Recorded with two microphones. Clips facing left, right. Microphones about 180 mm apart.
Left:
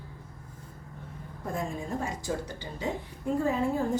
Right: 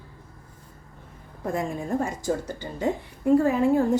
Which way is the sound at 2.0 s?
45° right (ahead or behind).